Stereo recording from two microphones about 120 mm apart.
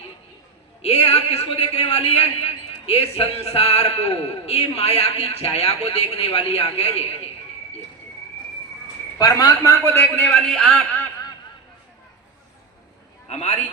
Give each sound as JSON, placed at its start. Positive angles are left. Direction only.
{"t": 0.8, "sound": "a man's voice", "side_deg": 60}
{"t": 9.1, "sound": "a man's voice", "side_deg": 30}
{"t": 10.2, "sound": "a man's voice", "side_deg": 10}
{"t": 13.2, "sound": "a sound", "side_deg": 70}